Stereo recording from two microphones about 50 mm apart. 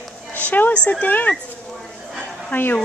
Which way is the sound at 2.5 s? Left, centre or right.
Left.